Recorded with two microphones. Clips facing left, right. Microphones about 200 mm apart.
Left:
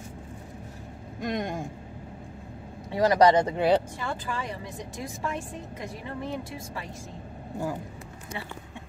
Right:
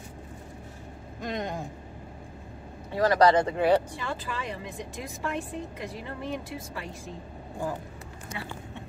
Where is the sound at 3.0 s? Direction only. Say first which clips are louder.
Left 1 dB; 20° left (ahead or behind).